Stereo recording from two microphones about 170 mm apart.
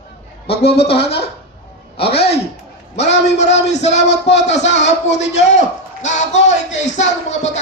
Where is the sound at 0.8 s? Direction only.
35° left (ahead or behind).